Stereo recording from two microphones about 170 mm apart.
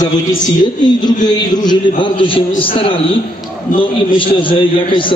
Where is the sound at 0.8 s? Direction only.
25° left (ahead or behind).